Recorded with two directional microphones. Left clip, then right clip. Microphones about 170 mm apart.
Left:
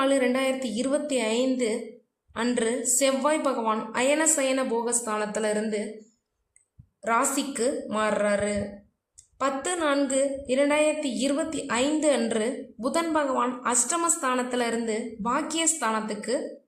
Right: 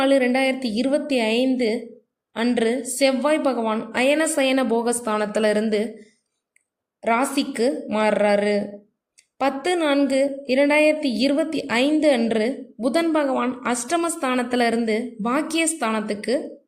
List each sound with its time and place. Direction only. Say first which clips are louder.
0.0 s a woman's voice: right 5 dB; 15° right (ahead or behind)
7.0 s a woman's voice: right 4 dB; 20° right (ahead or behind)